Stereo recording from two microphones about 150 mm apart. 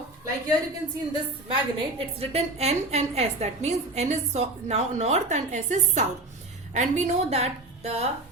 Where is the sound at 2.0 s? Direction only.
40° right (ahead or behind).